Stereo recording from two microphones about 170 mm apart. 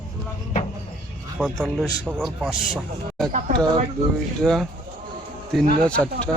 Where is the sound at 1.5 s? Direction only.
5° left (ahead or behind).